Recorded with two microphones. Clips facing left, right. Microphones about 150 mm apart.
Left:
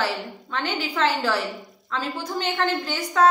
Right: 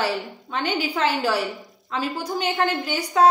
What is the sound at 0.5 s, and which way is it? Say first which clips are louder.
A woman's voice: right 2 dB; 20° right (ahead or behind).